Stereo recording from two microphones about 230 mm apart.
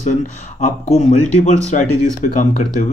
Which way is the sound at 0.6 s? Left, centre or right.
Left.